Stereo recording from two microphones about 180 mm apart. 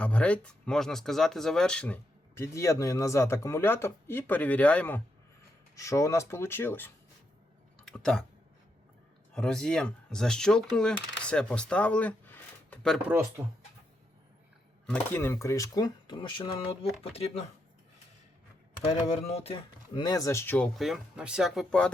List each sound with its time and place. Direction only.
0.0 s speech: 5° left (ahead or behind)
9.3 s speech: 5° left (ahead or behind)
13.1 s speech: 15° right (ahead or behind)
14.8 s speech: 10° left (ahead or behind); by 17.4 s 35° left (ahead or behind)
18.9 s speech: 35° left (ahead or behind); by 20.7 s 10° left (ahead or behind)
20.7 s speech: centre (ahead or behind)